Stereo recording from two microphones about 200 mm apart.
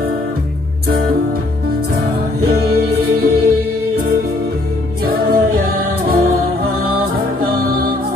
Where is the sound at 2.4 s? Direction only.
50° right (ahead or behind).